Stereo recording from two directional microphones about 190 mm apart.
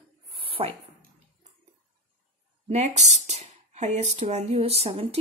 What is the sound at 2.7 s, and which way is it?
Speech, 35° right (ahead or behind).